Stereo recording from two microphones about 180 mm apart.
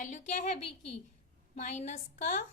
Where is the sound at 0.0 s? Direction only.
40° left (ahead or behind).